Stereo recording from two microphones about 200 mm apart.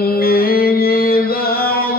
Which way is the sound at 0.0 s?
50° left (ahead or behind).